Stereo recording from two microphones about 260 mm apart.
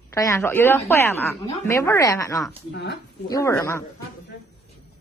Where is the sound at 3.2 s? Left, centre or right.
Centre.